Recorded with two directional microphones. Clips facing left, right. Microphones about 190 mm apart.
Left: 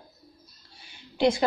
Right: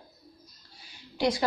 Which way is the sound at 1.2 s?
25° left (ahead or behind).